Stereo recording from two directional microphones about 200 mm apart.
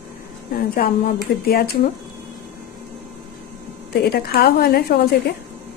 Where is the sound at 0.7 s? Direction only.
50° left (ahead or behind).